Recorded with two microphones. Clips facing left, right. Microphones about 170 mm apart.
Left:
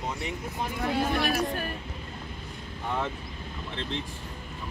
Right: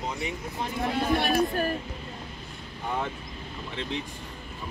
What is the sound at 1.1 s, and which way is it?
Speech, 35° right (ahead or behind).